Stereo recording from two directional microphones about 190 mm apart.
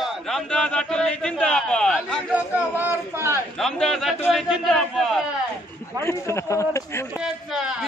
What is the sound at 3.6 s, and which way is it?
Speech, centre (ahead or behind).